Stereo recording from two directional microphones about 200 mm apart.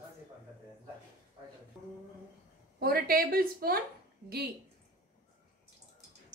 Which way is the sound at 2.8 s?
50° right (ahead or behind).